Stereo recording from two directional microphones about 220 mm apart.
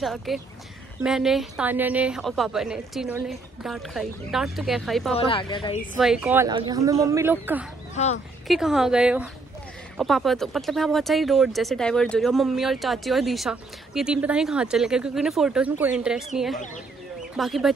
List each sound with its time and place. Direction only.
0.0 s speech: centre (ahead or behind)
5.1 s speech: 25° left (ahead or behind)
5.9 s a woman's voice: centre (ahead or behind)
7.9 s speech: 30° left (ahead or behind)
8.5 s speech: centre (ahead or behind)
17.4 s speech: centre (ahead or behind)